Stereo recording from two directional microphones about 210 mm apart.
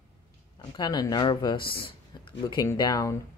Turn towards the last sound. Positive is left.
turn(degrees=15)  # may be behind; listen again after turning